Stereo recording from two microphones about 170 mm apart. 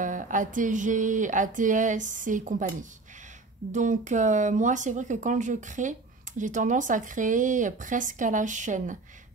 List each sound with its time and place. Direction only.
0.0 s speech: 50° right (ahead or behind)